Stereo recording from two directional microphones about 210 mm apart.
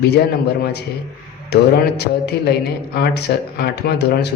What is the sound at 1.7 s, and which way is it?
Speech, 50° left (ahead or behind).